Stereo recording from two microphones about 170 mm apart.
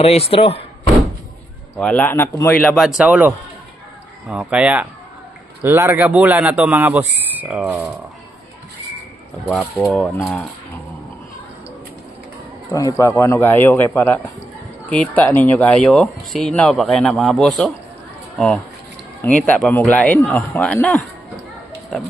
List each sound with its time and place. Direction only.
0.0 s speech: 35° left (ahead or behind)
1.8 s speech: 10° left (ahead or behind)
2.6 s speech: centre (ahead or behind)
9.5 s speech: 5° left (ahead or behind)
12.7 s a man's voice: 20° left (ahead or behind); by 17.7 s centre (ahead or behind)
19.2 s speech: 10° left (ahead or behind)